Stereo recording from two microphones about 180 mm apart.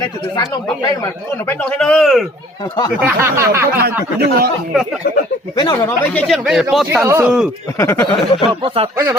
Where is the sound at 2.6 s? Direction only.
20° left (ahead or behind).